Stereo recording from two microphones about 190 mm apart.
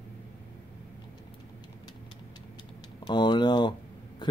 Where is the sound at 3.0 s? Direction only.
25° left (ahead or behind).